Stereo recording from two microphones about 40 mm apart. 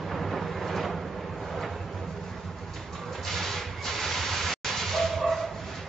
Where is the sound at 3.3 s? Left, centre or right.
Centre.